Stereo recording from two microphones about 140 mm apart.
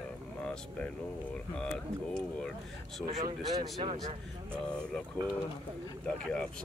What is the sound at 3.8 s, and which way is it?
Speech, 40° right (ahead or behind).